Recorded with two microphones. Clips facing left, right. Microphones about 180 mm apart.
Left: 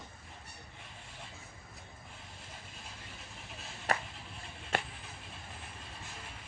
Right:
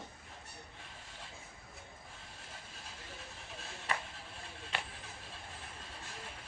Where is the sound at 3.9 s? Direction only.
45° left (ahead or behind).